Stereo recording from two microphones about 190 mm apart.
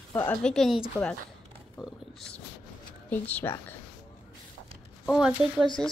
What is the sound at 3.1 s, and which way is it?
Speech, 10° left (ahead or behind).